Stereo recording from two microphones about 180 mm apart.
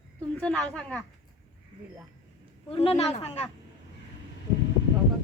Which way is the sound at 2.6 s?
35° left (ahead or behind).